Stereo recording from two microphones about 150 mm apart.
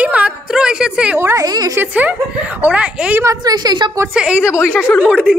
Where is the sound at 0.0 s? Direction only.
10° right (ahead or behind).